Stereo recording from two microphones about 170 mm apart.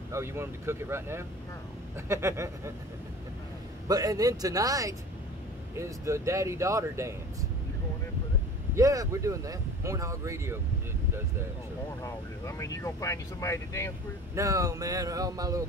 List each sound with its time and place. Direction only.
0.1 s speech: 15° right (ahead or behind)
3.8 s a sound: 20° right (ahead or behind)
5.8 s speech: 15° right (ahead or behind)
8.7 s speech: 20° right (ahead or behind)
12.0 s speech: 20° left (ahead or behind)
14.3 s a sound: 20° right (ahead or behind)